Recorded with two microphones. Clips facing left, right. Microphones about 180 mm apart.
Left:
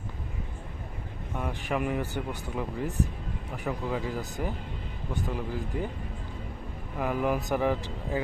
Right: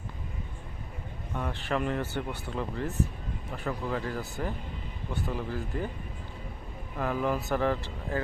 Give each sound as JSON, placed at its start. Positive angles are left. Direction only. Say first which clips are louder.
{"t": 1.4, "sound": "speech", "louder": "even", "side_deg": 15}
{"t": 7.0, "sound": "speech", "louder": "left 1 dB", "side_deg": 15}